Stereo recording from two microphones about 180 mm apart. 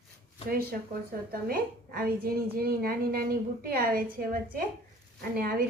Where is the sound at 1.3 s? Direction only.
55° right (ahead or behind).